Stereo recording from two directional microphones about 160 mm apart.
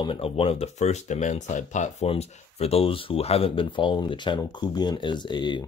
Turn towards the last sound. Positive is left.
turn(degrees=30)  # may be behind; listen again after turning